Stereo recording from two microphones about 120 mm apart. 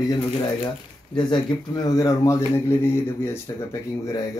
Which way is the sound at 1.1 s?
35° left (ahead or behind).